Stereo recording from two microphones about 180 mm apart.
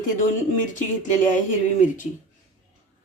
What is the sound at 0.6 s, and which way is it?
Speech, 45° left (ahead or behind).